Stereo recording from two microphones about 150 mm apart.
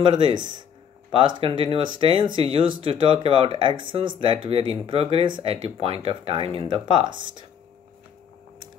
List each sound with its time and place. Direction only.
0.0 s speech: 30° right (ahead or behind)